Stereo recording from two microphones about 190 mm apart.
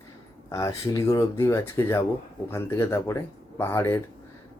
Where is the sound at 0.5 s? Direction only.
15° left (ahead or behind).